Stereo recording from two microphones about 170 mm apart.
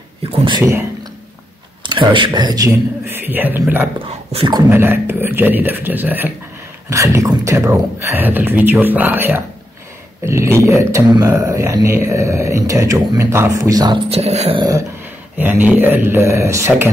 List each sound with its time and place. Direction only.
0.2 s a sound: 35° right (ahead or behind)
0.6 s a man's voice: 15° right (ahead or behind)
1.8 s speech: 30° right (ahead or behind)
3.1 s a man's voice: 10° right (ahead or behind)
4.3 s a sound: 30° right (ahead or behind)
4.6 s a man's voice: 10° right (ahead or behind)
14.1 s a sound: 40° right (ahead or behind)
14.6 s dog: 20° right (ahead or behind)
15.3 s a man's voice: 10° right (ahead or behind)